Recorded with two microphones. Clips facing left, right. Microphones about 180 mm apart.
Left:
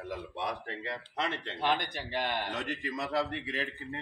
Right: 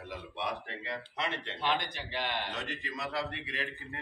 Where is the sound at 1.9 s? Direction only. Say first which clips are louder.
Left 3 dB; 45° left (ahead or behind).